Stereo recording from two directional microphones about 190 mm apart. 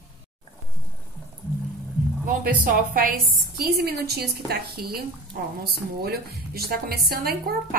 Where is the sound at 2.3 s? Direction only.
50° right (ahead or behind).